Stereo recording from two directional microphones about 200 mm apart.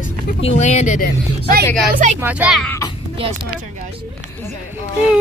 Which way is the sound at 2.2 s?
5° right (ahead or behind).